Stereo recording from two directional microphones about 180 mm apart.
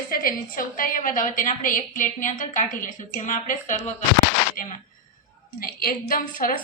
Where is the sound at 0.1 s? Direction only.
55° left (ahead or behind).